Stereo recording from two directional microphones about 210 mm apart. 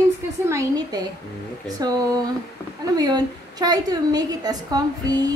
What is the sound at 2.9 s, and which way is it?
A woman's voice, 20° right (ahead or behind).